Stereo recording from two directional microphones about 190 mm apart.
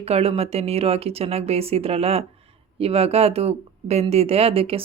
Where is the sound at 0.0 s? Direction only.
30° right (ahead or behind).